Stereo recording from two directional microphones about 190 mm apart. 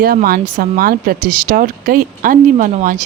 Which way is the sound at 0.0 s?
50° right (ahead or behind).